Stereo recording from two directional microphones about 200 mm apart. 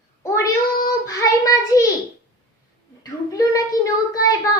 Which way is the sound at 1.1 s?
15° left (ahead or behind).